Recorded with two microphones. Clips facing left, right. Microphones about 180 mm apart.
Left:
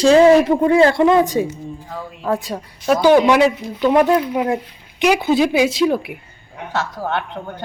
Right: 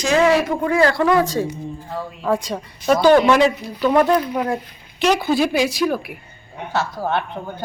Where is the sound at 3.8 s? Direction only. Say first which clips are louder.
Left 2 dB; 15° left (ahead or behind).